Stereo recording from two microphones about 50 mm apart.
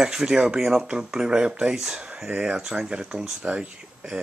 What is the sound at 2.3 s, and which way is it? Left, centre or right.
Speech, centre.